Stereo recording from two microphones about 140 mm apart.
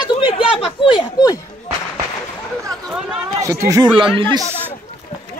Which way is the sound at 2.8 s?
5° right (ahead or behind).